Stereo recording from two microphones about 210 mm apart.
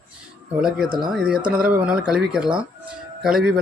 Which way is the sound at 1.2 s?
5° right (ahead or behind).